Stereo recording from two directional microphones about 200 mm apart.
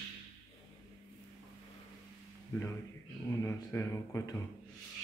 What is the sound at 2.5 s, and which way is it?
A man's voice, 10° left (ahead or behind).